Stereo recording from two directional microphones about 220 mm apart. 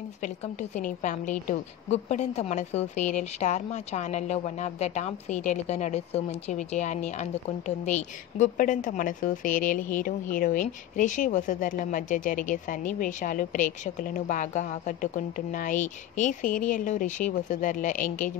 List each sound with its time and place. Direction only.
0.2 s a woman's voice: 35° left (ahead or behind)